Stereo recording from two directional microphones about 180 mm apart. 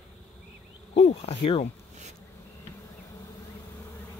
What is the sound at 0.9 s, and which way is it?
Insect, 35° left (ahead or behind).